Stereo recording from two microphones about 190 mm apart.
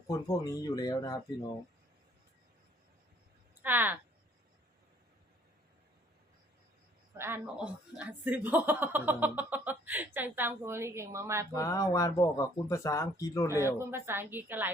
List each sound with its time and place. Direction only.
0.1 s speech: 20° left (ahead or behind)
3.6 s speech: 10° right (ahead or behind)
7.2 s speech: 10° right (ahead or behind)
11.5 s speech: 15° left (ahead or behind)
13.7 s speech: 10° right (ahead or behind)